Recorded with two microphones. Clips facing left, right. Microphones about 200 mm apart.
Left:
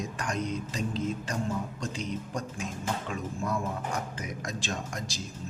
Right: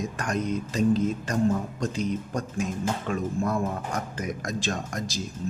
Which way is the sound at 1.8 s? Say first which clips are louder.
Right 6 dB; 50° right (ahead or behind).